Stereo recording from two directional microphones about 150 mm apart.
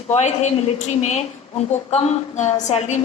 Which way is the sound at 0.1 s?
50° left (ahead or behind).